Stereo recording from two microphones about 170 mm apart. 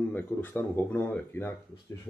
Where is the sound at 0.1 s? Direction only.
10° left (ahead or behind).